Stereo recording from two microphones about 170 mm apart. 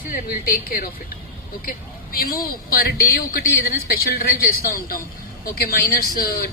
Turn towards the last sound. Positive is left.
turn(degrees=65)  # may be behind; listen again after turning